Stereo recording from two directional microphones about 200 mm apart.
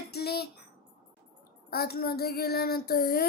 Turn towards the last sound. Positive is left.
turn(degrees=50)  # may be behind; listen again after turning